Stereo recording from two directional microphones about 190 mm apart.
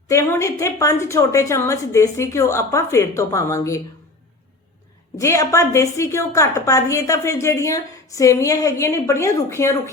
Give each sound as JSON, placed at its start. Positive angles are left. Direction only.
{"t": 0.1, "sound": "a woman's voice", "side_deg": 15}
{"t": 5.1, "sound": "a woman's voice", "side_deg": 15}